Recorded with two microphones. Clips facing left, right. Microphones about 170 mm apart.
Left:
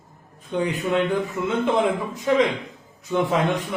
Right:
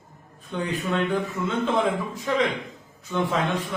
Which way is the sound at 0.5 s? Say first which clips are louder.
Left 4 dB; 20° left (ahead or behind).